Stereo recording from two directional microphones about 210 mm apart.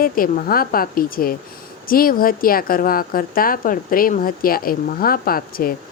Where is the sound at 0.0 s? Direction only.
45° left (ahead or behind).